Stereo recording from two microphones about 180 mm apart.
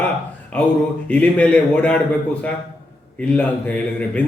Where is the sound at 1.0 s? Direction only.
5° left (ahead or behind).